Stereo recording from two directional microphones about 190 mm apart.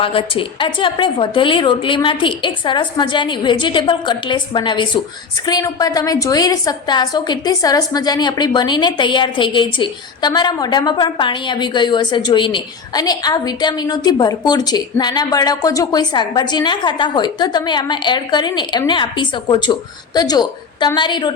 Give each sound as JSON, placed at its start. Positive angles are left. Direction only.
{"t": 0.0, "sound": "a woman's voice", "side_deg": 30}